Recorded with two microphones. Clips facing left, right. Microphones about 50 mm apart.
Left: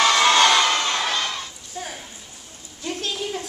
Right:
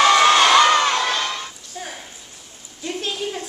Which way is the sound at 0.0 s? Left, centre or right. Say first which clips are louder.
Right 3 dB; centre.